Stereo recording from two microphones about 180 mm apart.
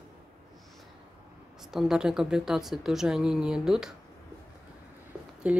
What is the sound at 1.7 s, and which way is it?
Speech, centre (ahead or behind).